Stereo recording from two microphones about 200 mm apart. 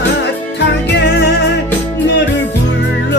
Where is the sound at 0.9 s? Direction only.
55° left (ahead or behind).